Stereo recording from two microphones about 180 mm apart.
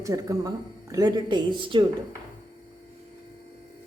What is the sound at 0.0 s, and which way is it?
Speech, 20° right (ahead or behind).